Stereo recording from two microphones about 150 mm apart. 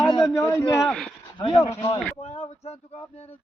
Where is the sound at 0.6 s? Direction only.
20° left (ahead or behind).